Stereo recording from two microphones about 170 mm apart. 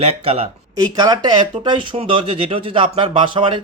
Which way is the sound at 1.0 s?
25° right (ahead or behind).